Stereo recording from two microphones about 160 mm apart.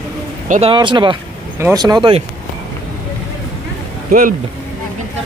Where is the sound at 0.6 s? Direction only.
30° right (ahead or behind).